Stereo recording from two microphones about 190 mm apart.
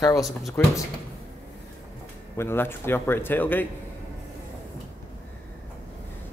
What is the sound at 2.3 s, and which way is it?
A man's voice, 10° left (ahead or behind).